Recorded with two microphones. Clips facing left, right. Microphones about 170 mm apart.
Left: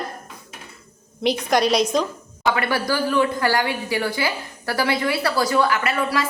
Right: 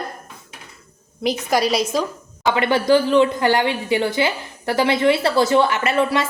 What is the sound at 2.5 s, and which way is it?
A woman's voice, 20° right (ahead or behind).